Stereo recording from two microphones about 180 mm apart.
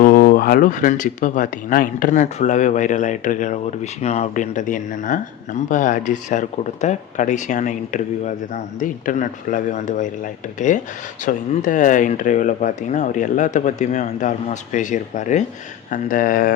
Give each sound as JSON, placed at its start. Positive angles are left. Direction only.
{"t": 0.0, "sound": "speech", "side_deg": 55}
{"t": 11.3, "sound": "speech", "side_deg": 45}